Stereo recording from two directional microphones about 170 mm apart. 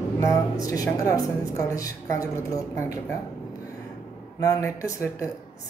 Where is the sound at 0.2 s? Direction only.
20° left (ahead or behind).